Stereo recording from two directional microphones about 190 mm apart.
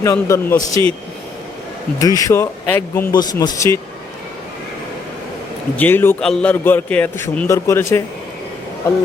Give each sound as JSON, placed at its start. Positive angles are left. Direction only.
{"t": 0.0, "sound": "a man's voice", "side_deg": 15}
{"t": 2.0, "sound": "a man's voice", "side_deg": 20}
{"t": 5.7, "sound": "a man's voice", "side_deg": 10}